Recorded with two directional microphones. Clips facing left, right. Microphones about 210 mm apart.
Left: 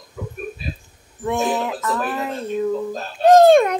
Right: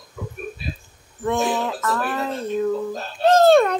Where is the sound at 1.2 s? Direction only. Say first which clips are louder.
Even; 10° left (ahead or behind).